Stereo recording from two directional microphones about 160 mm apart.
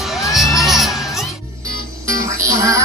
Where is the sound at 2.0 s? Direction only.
20° right (ahead or behind).